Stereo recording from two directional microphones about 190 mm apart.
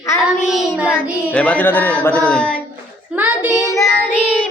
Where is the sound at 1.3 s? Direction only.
5° left (ahead or behind).